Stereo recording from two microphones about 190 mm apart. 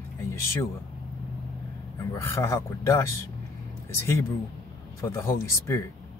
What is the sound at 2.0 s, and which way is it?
Speech, 15° left (ahead or behind).